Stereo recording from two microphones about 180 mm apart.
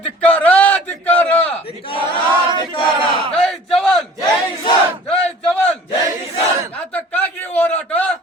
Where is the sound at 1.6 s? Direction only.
30° left (ahead or behind).